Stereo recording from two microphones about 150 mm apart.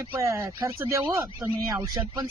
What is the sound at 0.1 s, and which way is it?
Speech, 20° right (ahead or behind).